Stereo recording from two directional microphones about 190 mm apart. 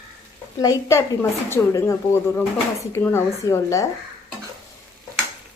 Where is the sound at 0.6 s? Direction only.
15° left (ahead or behind).